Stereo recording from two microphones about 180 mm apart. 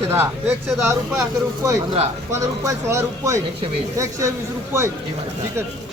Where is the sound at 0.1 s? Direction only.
10° right (ahead or behind).